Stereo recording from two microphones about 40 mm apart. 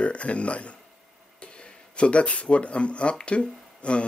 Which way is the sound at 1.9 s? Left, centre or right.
Left.